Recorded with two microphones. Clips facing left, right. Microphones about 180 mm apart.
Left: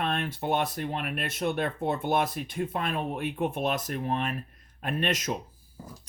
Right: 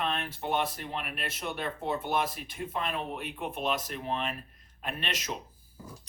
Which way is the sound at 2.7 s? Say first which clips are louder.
Left 3 dB; 50° left (ahead or behind).